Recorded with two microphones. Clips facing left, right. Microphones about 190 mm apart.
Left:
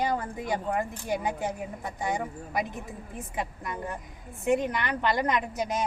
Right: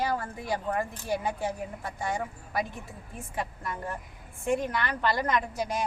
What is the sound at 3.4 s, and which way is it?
A woman's voice, 20° left (ahead or behind).